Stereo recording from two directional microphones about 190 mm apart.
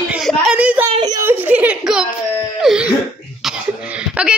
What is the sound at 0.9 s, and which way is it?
A child's voice, 20° right (ahead or behind).